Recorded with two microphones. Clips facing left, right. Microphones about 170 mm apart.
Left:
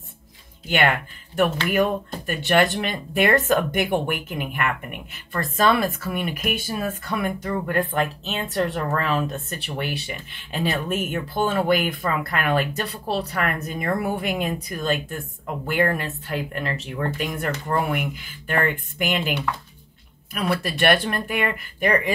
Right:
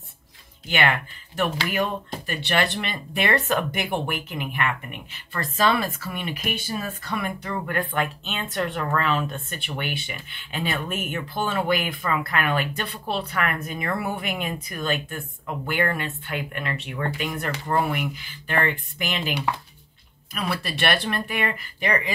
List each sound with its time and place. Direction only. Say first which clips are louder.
0.7 s speech: left 2 dB; 50° left (ahead or behind)
20.4 s speech: left 5 dB; 50° left (ahead or behind)